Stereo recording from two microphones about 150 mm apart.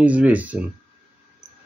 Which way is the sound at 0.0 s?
10° right (ahead or behind).